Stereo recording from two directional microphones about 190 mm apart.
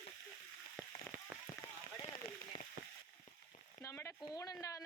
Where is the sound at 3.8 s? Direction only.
15° left (ahead or behind).